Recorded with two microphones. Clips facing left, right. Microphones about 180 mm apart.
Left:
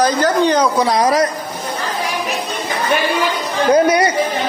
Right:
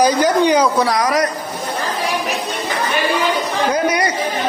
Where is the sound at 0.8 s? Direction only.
25° left (ahead or behind).